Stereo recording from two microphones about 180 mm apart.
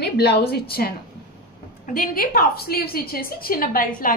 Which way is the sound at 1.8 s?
50° left (ahead or behind).